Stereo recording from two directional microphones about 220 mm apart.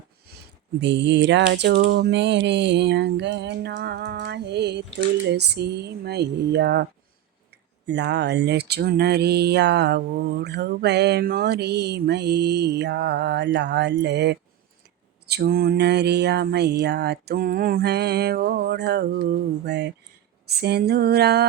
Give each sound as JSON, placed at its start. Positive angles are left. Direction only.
{"t": 0.3, "sound": "a sound", "side_deg": -45}
{"t": 0.8, "sound": "speech", "side_deg": -55}
{"t": 7.9, "sound": "speech", "side_deg": -50}